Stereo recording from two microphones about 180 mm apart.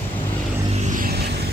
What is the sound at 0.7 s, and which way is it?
Vehicle, 45° right (ahead or behind).